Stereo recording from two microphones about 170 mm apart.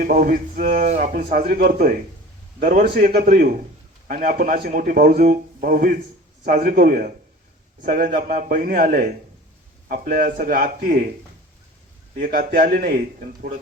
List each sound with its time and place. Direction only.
0.0 s a man's voice: 55° right (ahead or behind)
3.1 s speech: 65° right (ahead or behind)
12.1 s speech: 55° right (ahead or behind)